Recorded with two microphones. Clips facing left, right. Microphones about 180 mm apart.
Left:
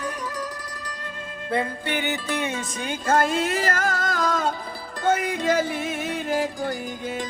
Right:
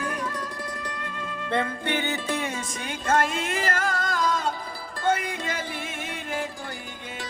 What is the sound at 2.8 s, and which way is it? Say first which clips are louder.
Music: left 3 dB; 35° left (ahead or behind).